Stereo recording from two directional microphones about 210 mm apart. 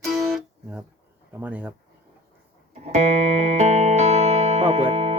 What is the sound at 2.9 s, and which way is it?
Music, 35° right (ahead or behind).